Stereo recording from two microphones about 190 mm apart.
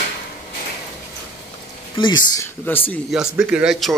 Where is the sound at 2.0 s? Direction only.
25° left (ahead or behind).